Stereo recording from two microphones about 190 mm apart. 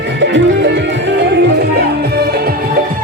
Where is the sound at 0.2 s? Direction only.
70° right (ahead or behind).